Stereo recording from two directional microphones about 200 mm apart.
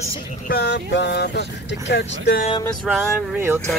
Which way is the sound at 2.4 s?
25° left (ahead or behind).